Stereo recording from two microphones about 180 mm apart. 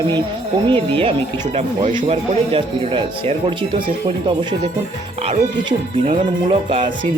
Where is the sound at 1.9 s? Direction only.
40° right (ahead or behind).